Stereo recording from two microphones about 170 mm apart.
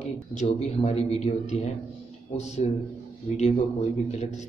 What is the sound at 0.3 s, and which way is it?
Speech, 40° left (ahead or behind).